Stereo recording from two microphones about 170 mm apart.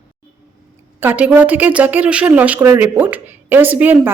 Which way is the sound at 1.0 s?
10° right (ahead or behind).